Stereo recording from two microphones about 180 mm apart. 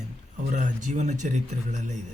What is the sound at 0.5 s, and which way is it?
Speech, 45° right (ahead or behind).